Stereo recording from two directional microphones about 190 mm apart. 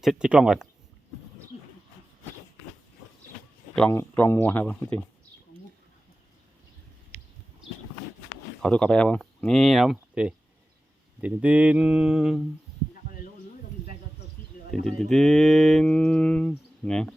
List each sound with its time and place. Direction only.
0.0 s speech: 5° right (ahead or behind)
1.5 s a sound: 35° left (ahead or behind)
3.8 s speech: 10° left (ahead or behind)
8.6 s speech: 5° left (ahead or behind)
15.1 s speech: centre (ahead or behind)